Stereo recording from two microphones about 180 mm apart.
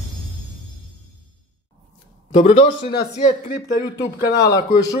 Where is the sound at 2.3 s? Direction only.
40° left (ahead or behind).